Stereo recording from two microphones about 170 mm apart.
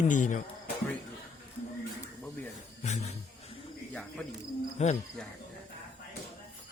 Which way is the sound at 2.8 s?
40° left (ahead or behind).